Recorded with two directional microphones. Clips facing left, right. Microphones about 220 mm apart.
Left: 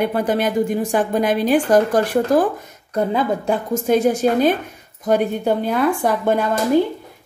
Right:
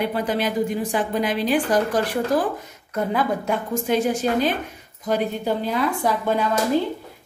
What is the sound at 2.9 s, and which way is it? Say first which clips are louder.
Speech: left 3 dB; 30° left (ahead or behind).